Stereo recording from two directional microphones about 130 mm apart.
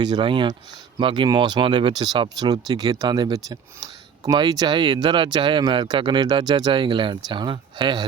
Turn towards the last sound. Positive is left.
turn(degrees=-35)  # may be behind; listen again after turning